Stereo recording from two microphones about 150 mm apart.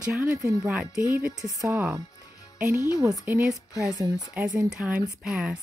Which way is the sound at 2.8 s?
20° left (ahead or behind).